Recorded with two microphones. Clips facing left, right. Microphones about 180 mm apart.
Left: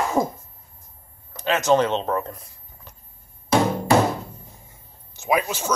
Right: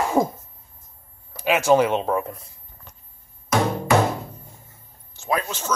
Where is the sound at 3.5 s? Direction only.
30° left (ahead or behind).